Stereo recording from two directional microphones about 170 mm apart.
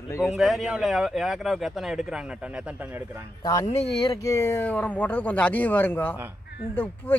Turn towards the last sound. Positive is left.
turn(degrees=10)  # may be behind; listen again after turning